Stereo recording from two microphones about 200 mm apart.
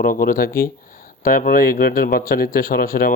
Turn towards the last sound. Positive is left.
turn(degrees=45)  # may be behind; listen again after turning